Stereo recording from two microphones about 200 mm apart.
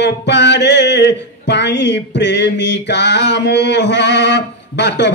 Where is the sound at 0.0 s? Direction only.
60° left (ahead or behind).